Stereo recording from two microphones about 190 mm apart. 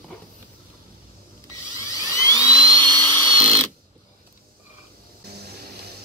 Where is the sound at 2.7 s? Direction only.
25° right (ahead or behind).